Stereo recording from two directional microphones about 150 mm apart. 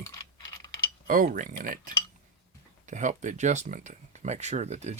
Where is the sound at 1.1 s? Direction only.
65° right (ahead or behind).